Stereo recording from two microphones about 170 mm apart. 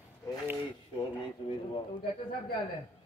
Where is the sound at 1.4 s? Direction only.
30° left (ahead or behind).